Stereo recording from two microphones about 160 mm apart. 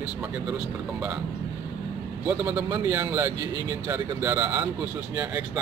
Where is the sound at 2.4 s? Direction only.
15° right (ahead or behind).